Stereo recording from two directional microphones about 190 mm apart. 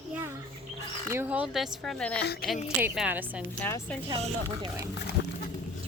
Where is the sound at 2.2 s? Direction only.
55° left (ahead or behind).